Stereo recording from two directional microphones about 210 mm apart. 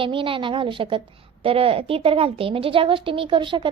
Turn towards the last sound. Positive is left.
turn(degrees=-25)  # may be behind; listen again after turning